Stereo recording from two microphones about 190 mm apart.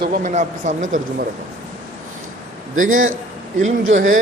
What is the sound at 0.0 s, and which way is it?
Speech, 45° right (ahead or behind).